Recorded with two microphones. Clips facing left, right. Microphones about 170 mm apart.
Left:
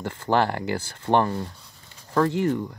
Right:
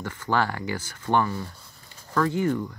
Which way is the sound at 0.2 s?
30° left (ahead or behind).